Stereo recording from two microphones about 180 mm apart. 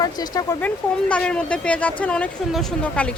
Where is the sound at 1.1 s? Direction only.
5° left (ahead or behind).